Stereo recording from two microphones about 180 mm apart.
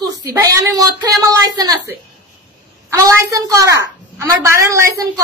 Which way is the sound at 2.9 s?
15° right (ahead or behind).